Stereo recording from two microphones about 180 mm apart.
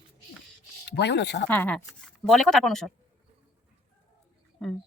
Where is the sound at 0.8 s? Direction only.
70° left (ahead or behind).